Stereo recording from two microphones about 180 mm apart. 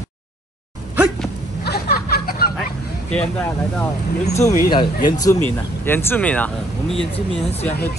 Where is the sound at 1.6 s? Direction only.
60° left (ahead or behind).